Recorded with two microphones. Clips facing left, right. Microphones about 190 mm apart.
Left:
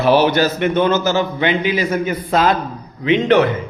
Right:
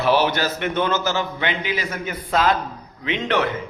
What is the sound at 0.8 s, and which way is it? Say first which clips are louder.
A man's voice: left 6 dB; 20° left (ahead or behind).